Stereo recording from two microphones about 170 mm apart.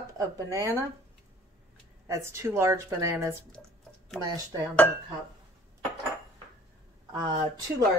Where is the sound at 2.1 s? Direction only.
15° right (ahead or behind).